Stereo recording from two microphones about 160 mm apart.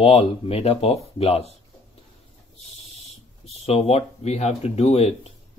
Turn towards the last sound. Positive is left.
turn(degrees=40)  # may be behind; listen again after turning